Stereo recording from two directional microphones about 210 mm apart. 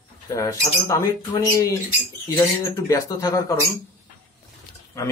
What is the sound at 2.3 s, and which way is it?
Speech, 15° left (ahead or behind).